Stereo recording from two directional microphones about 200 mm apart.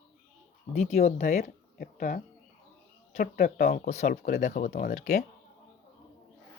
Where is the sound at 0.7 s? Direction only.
35° left (ahead or behind).